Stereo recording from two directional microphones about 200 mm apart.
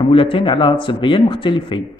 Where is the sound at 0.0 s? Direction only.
25° left (ahead or behind).